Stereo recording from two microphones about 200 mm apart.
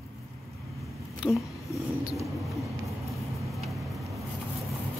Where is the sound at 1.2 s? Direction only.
5° right (ahead or behind).